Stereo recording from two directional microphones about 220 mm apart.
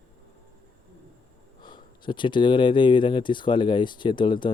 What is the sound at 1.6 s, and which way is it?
Speech, 20° left (ahead or behind).